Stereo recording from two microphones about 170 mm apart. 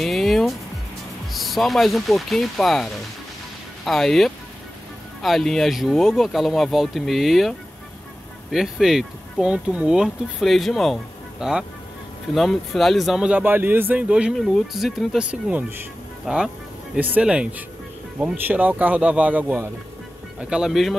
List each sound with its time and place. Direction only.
0.0 s music: centre (ahead or behind)
1.3 s speech: centre (ahead or behind)